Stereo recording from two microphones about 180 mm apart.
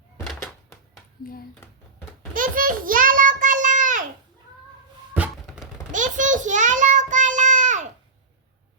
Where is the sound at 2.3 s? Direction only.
50° right (ahead or behind).